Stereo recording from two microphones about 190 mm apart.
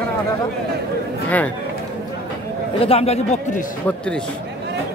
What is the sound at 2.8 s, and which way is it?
Speech, 30° left (ahead or behind).